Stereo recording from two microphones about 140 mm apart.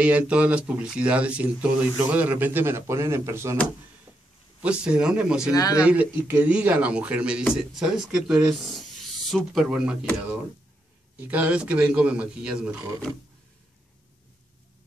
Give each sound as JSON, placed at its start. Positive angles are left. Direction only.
{"t": 0.0, "sound": "speech", "side_deg": -10}
{"t": 4.6, "sound": "speech", "side_deg": -5}
{"t": 5.5, "sound": "speech", "side_deg": 25}
{"t": 5.8, "sound": "speech", "side_deg": -10}
{"t": 11.1, "sound": "speech", "side_deg": -10}